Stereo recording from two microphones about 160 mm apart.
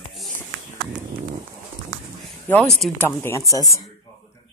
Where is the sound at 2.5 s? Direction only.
5° left (ahead or behind).